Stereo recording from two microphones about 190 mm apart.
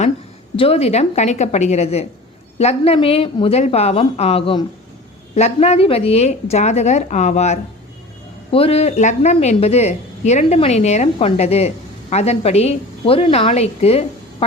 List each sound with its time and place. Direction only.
0.5 s speech: 30° left (ahead or behind)